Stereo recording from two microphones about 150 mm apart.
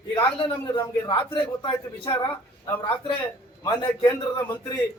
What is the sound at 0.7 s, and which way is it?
A man's voice, 35° left (ahead or behind).